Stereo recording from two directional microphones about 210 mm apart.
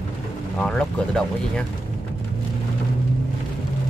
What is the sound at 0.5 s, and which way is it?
Speech, 5° left (ahead or behind).